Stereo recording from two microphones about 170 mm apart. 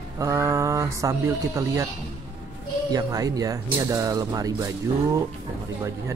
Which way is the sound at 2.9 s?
20° right (ahead or behind).